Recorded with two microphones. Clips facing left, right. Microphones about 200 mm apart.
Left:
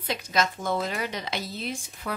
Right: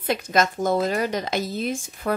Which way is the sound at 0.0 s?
50° right (ahead or behind).